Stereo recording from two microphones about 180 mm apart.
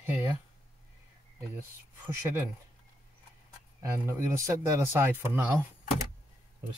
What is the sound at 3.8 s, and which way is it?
Speech, 15° right (ahead or behind).